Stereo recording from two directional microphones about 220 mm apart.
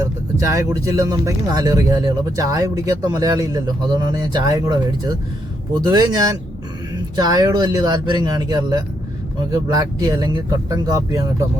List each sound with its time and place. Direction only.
0.4 s speech: 15° right (ahead or behind)